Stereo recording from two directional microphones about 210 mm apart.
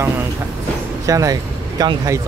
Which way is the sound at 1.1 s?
15° right (ahead or behind).